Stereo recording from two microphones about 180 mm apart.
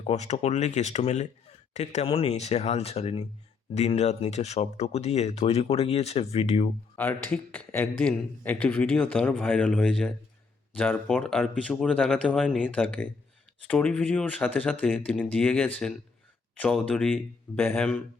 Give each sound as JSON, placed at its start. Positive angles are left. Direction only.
{"t": 0.0, "sound": "speech", "side_deg": 40}
{"t": 6.9, "sound": "a man's voice", "side_deg": 10}